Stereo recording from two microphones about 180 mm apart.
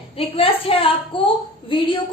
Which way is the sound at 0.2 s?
30° left (ahead or behind).